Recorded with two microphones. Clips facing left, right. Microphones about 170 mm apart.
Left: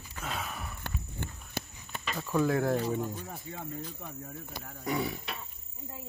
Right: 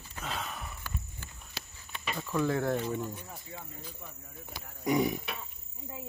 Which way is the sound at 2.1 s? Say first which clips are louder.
Left 2 dB; 10° left (ahead or behind).